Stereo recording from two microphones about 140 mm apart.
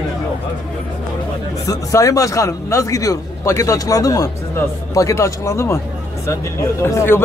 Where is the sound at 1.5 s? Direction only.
25° left (ahead or behind).